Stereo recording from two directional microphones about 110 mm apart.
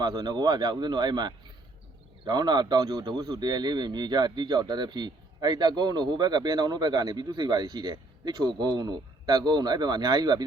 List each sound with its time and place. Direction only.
0.0 s speech: 35° right (ahead or behind)